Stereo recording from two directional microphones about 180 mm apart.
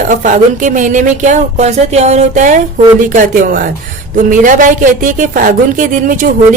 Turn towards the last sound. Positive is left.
turn(degrees=-45)  # may be behind; listen again after turning